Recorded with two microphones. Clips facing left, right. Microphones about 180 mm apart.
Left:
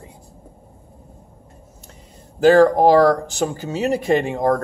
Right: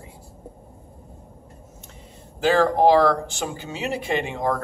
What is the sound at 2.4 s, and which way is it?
Speech, 45° left (ahead or behind).